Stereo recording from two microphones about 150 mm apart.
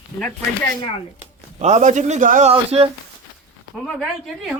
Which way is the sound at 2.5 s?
40° right (ahead or behind).